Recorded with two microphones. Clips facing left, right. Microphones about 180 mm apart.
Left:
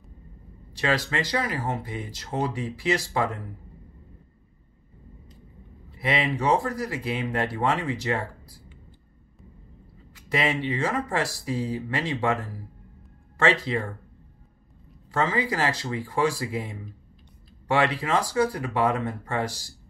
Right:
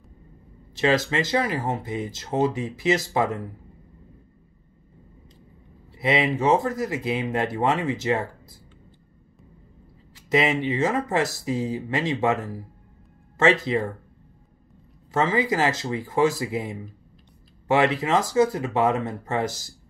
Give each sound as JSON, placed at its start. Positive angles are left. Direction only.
{"t": 0.7, "sound": "speech", "side_deg": -20}
{"t": 5.9, "sound": "speech", "side_deg": -25}
{"t": 10.3, "sound": "speech", "side_deg": -20}
{"t": 13.4, "sound": "speech", "side_deg": -20}
{"t": 15.0, "sound": "speech", "side_deg": -20}